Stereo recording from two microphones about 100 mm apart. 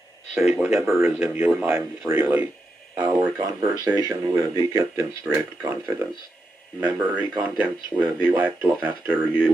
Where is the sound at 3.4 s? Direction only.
40° right (ahead or behind).